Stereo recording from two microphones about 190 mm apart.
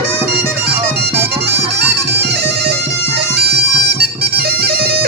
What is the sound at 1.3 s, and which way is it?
Bagpipes, 60° right (ahead or behind).